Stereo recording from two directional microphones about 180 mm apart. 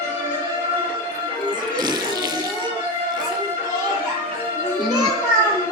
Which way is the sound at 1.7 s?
20° right (ahead or behind).